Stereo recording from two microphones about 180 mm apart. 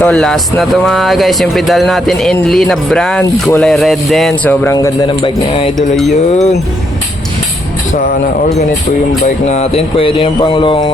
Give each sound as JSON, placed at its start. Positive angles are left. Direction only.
{"t": 0.0, "sound": "speech", "side_deg": 5}
{"t": 9.2, "sound": "speech", "side_deg": 40}